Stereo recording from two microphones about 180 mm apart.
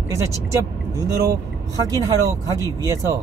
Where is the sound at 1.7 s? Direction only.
20° right (ahead or behind).